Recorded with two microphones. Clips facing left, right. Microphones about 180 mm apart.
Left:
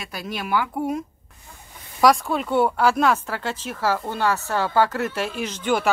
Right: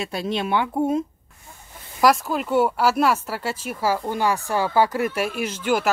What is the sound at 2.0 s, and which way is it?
Speech, centre (ahead or behind).